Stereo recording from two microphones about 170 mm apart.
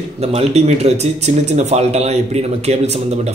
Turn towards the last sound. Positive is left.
turn(degrees=-40)  # may be behind; listen again after turning